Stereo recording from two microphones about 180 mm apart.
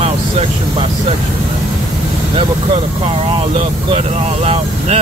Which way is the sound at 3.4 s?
30° right (ahead or behind).